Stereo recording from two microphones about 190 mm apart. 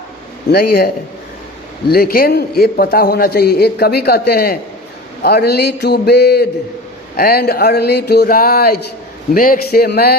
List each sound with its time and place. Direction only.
0.5 s speech: 55° left (ahead or behind)
1.9 s a man's voice: 50° left (ahead or behind)